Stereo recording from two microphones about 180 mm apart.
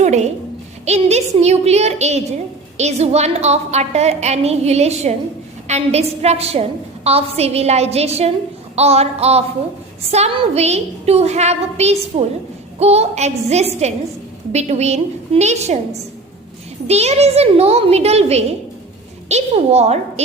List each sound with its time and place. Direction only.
0.0 s a sound: 40° right (ahead or behind)
0.9 s a woman's voice: 35° right (ahead or behind)
16.8 s a woman's voice: 35° right (ahead or behind)